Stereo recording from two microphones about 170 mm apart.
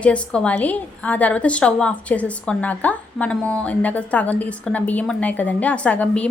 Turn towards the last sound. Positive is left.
turn(degrees=10)  # may be behind; listen again after turning